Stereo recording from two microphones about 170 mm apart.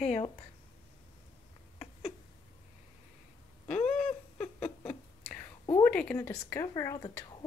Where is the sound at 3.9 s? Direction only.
5° left (ahead or behind).